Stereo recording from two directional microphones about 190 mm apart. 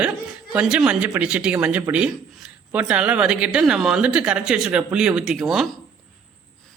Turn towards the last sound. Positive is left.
turn(degrees=0)  # may be behind; listen again after turning